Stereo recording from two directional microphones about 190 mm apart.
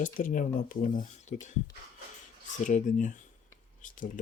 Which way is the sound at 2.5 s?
40° left (ahead or behind).